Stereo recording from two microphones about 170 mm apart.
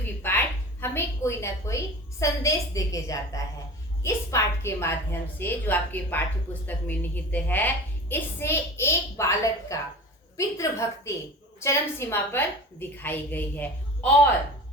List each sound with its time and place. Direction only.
0.2 s a woman's voice: 10° left (ahead or behind)